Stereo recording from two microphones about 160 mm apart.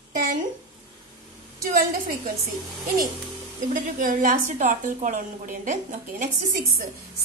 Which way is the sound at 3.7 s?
60° right (ahead or behind).